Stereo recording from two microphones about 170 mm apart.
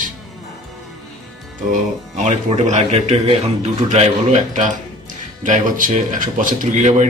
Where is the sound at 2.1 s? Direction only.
45° right (ahead or behind).